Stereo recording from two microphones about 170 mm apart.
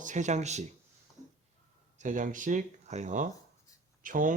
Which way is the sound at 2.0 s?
50° right (ahead or behind).